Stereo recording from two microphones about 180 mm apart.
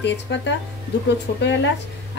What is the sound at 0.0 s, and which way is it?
Speech, 80° left.